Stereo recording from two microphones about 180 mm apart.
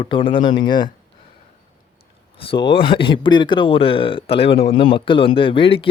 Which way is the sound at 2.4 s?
30° left (ahead or behind).